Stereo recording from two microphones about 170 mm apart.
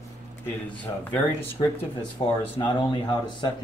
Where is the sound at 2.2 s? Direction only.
30° left (ahead or behind).